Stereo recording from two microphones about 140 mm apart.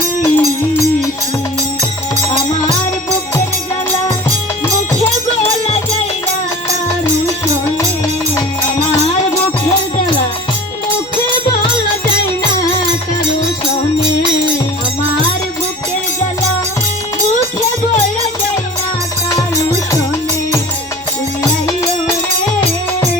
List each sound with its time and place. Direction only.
0.2 s music: 20° left (ahead or behind)